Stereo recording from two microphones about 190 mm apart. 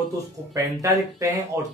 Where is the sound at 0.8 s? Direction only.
15° right (ahead or behind).